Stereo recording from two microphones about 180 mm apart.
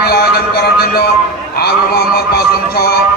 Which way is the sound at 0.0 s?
60° left (ahead or behind).